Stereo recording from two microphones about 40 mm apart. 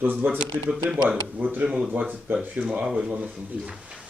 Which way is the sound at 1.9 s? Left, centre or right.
Right.